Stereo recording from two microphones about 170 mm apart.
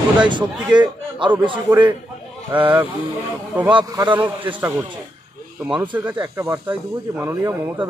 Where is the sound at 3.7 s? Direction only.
25° right (ahead or behind).